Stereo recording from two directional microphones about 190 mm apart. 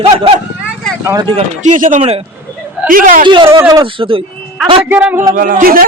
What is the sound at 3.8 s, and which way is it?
Speech, 30° right (ahead or behind).